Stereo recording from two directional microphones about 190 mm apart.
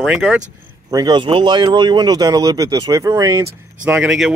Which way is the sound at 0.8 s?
20° right (ahead or behind).